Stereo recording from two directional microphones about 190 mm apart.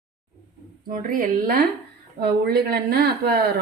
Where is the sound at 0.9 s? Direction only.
45° right (ahead or behind).